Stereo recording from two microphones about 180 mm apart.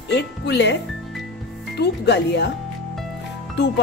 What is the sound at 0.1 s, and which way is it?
Speech, 70° left (ahead or behind).